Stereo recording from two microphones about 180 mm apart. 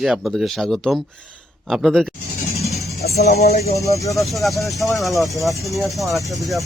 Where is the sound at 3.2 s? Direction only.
60° left (ahead or behind).